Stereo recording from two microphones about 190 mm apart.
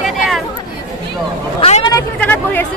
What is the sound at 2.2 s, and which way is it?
Speech, 10° left (ahead or behind).